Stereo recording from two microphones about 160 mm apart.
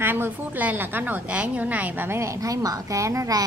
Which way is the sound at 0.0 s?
15° right (ahead or behind).